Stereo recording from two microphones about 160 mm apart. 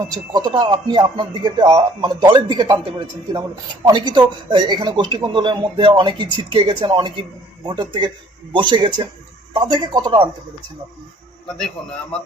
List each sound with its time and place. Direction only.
0.1 s speech: 25° right (ahead or behind)